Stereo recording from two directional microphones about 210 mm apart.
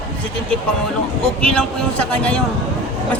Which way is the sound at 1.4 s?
5° left (ahead or behind).